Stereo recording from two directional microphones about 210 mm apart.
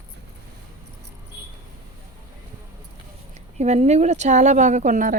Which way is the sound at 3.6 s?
30° right (ahead or behind).